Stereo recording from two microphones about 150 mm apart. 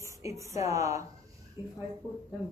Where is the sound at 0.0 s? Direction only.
20° right (ahead or behind).